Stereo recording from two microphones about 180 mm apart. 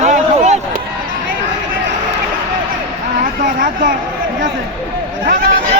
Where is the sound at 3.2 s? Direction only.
50° right (ahead or behind).